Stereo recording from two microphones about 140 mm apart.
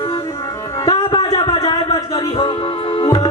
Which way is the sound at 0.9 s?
30° left (ahead or behind).